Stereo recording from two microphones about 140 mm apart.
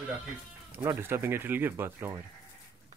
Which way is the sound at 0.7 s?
20° right (ahead or behind).